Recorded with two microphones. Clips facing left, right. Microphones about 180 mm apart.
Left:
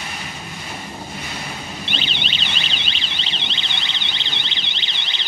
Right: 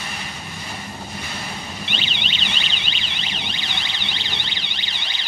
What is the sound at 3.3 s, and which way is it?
Alarm, 25° left (ahead or behind).